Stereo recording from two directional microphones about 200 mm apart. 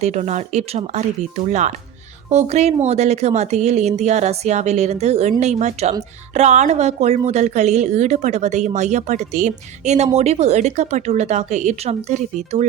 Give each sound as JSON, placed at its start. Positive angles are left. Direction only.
{"t": 0.0, "sound": "speech", "side_deg": -35}